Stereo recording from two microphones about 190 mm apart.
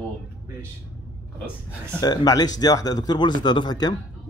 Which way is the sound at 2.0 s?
20° left (ahead or behind).